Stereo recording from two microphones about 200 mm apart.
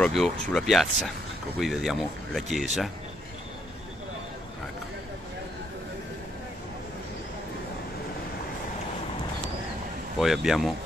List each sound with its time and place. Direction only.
0.0 s speech: centre (ahead or behind)
10.1 s speech: centre (ahead or behind)